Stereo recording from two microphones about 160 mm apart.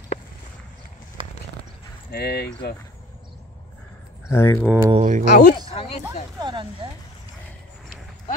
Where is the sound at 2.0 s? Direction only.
85° left.